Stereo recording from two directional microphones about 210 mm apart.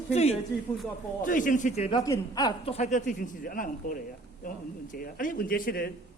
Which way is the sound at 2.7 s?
35° left (ahead or behind).